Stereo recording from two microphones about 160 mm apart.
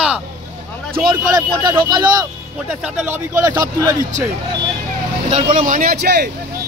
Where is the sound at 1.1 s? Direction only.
25° right (ahead or behind).